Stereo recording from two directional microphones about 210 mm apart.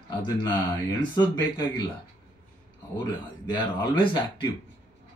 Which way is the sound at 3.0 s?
20° left (ahead or behind).